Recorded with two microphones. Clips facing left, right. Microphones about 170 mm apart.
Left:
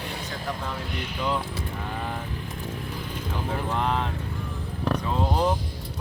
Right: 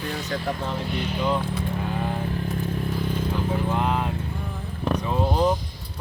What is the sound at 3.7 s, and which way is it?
Speech, 10° right (ahead or behind).